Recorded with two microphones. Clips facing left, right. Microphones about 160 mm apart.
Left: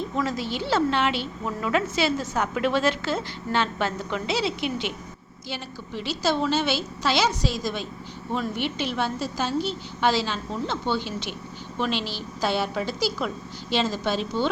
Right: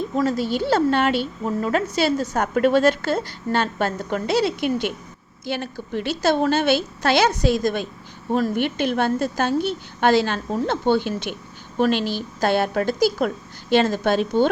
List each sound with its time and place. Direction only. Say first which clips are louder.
0.2 s a woman's voice: right 7 dB; 40° right (ahead or behind)